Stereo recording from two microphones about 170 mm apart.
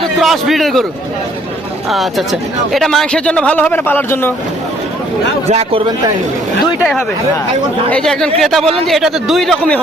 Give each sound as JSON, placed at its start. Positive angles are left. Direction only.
{"t": 0.2, "sound": "a man's voice", "side_deg": 0}
{"t": 1.9, "sound": "a man's voice", "side_deg": 0}
{"t": 5.5, "sound": "a man's voice", "side_deg": -40}
{"t": 7.9, "sound": "speech", "side_deg": 5}